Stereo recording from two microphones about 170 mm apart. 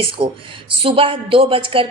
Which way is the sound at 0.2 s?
25° right (ahead or behind).